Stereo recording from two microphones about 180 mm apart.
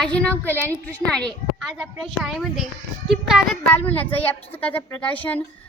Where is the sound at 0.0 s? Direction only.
5° left (ahead or behind).